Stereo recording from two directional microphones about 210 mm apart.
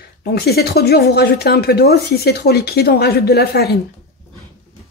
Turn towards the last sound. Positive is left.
turn(degrees=50)  # may be behind; listen again after turning